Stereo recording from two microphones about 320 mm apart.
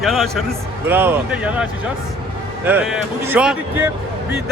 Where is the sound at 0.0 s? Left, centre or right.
Centre.